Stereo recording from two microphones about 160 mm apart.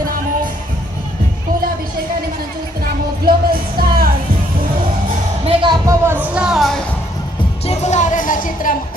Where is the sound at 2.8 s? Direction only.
70° right (ahead or behind).